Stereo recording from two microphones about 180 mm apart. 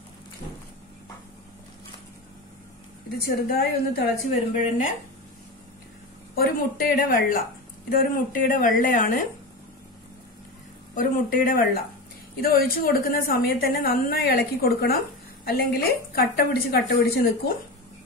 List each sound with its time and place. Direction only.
3.2 s a woman's voice: 60° left (ahead or behind)
6.3 s speech: 55° left (ahead or behind)
11.0 s a woman's voice: 50° left (ahead or behind)